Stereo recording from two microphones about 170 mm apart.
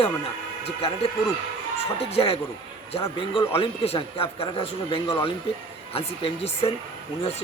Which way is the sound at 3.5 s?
35° left (ahead or behind).